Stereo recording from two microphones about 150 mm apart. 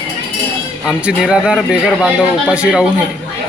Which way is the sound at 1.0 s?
5° right (ahead or behind).